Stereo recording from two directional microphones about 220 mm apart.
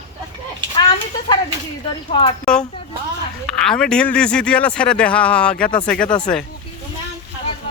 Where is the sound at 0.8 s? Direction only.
20° left (ahead or behind).